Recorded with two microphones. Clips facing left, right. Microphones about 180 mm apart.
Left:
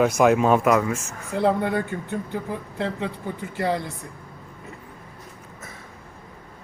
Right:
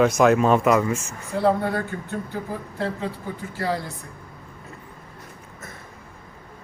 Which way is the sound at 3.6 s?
20° left (ahead or behind).